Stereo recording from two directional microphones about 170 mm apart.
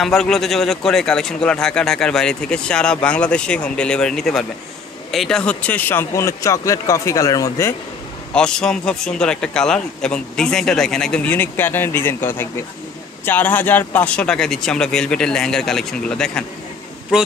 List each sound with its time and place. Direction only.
0.0 s a man's voice: centre (ahead or behind); by 7.7 s 20° left (ahead or behind)
8.3 s a man's voice: 5° left (ahead or behind)